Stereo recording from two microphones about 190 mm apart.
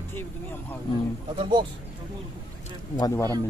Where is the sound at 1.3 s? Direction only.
25° right (ahead or behind).